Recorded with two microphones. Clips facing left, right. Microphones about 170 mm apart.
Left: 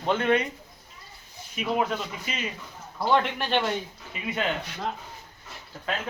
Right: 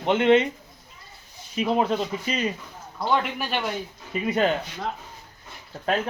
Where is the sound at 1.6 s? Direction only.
35° right (ahead or behind).